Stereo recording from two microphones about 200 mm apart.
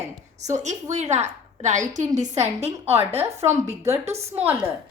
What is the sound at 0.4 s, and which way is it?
A woman's voice, 35° right (ahead or behind).